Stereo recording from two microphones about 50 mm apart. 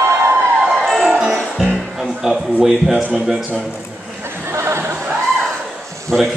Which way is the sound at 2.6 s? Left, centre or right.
Centre.